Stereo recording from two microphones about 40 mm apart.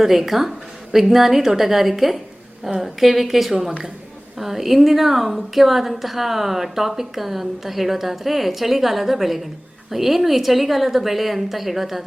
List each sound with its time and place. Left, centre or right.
0.0 s a woman's voice: centre